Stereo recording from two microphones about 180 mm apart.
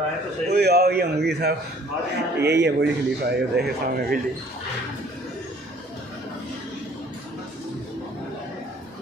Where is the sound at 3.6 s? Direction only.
60° right (ahead or behind).